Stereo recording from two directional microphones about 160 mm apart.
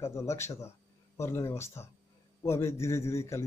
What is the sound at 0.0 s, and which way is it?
A man's voice, 15° left (ahead or behind).